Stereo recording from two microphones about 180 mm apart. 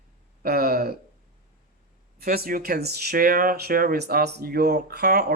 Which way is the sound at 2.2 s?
55° right (ahead or behind).